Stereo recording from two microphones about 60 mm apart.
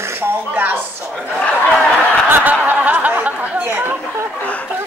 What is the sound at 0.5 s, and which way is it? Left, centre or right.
Speech, right.